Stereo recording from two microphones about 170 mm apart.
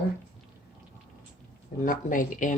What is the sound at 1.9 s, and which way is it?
Speech, 50° left (ahead or behind).